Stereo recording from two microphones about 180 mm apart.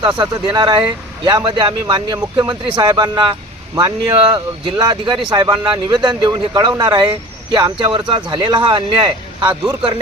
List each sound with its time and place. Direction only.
0.2 s a man's voice: 25° right (ahead or behind)